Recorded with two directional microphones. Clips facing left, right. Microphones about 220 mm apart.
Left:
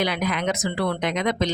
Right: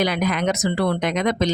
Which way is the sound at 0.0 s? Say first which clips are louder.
Right 3 dB; 45° right (ahead or behind).